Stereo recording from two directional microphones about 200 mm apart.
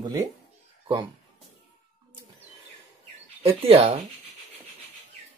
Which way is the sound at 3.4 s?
30° right (ahead or behind).